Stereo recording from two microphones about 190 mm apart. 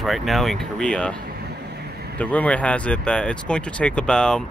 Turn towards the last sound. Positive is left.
turn(degrees=5)  # may be behind; listen again after turning